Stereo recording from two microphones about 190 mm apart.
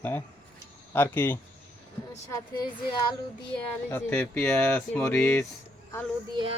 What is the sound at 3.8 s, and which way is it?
Speech, 10° left (ahead or behind).